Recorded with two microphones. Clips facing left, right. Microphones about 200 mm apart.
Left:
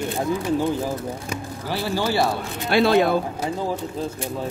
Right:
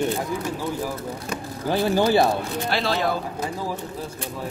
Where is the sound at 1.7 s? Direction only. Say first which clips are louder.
Right 5 dB; 20° right (ahead or behind).